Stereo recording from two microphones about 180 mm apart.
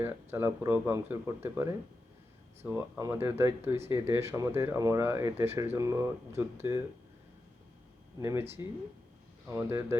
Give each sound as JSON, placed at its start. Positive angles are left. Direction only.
{"t": 0.0, "sound": "speech", "side_deg": -15}
{"t": 8.2, "sound": "speech", "side_deg": -15}
{"t": 9.5, "sound": "speech", "side_deg": -15}